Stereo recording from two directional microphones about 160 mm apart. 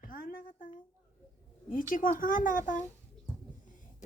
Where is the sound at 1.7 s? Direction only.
60° left (ahead or behind).